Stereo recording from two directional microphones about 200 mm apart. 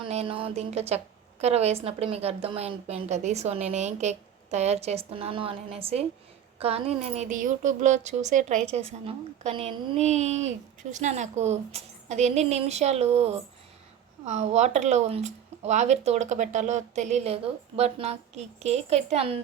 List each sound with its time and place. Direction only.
0.0 s a woman's voice: 30° right (ahead or behind)